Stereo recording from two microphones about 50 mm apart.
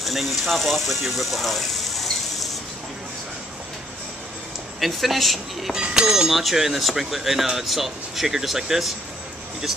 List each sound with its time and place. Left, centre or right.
0.0 s speech: centre
4.7 s speech: centre
5.8 s speech: centre
6.3 s speech: centre